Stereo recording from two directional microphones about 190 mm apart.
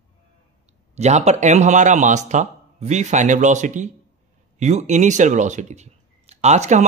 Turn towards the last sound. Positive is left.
turn(degrees=-40)  # may be behind; listen again after turning